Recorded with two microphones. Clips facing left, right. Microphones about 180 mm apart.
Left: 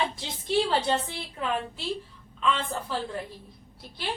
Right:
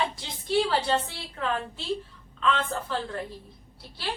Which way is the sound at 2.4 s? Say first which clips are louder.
Right 1 dB; 10° left (ahead or behind).